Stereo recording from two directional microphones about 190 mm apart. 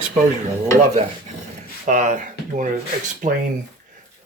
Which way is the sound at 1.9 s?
40° right (ahead or behind).